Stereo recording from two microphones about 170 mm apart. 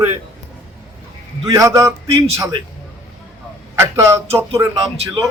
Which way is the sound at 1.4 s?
20° right (ahead or behind).